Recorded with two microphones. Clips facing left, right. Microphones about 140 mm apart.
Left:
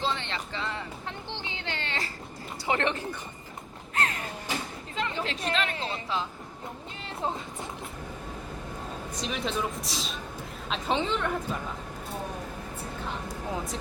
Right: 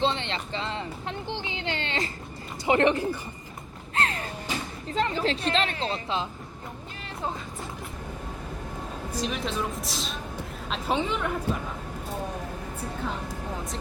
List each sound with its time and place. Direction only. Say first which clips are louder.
0.0 s a sound: right 4 dB; 20° right (ahead or behind)
2.6 s speech: right 6 dB; 15° right (ahead or behind)
3.9 s music: right 2 dB; 30° right (ahead or behind)
4.9 s a woman's voice: right 6 dB; 35° right (ahead or behind)
9.2 s speech: even; centre (ahead or behind)